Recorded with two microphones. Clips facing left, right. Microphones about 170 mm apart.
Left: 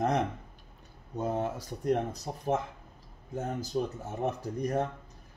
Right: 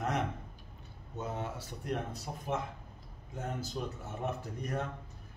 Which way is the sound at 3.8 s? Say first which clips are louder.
Left 7 dB; 35° left (ahead or behind).